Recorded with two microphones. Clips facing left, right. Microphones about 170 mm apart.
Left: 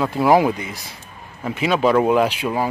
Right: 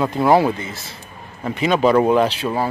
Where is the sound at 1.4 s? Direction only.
5° left (ahead or behind).